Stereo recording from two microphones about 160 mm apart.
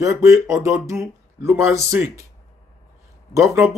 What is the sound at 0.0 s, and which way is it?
Speech, 20° right (ahead or behind).